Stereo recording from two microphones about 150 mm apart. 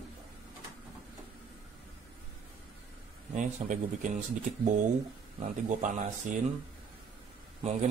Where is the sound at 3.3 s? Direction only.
55° right (ahead or behind).